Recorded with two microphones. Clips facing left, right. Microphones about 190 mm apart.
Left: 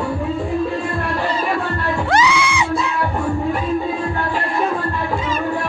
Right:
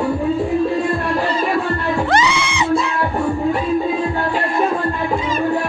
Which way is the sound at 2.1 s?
5° left (ahead or behind).